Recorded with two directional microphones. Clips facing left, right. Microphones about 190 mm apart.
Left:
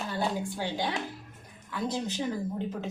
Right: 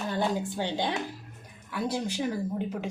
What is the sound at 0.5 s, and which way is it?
A woman's voice, 20° right (ahead or behind).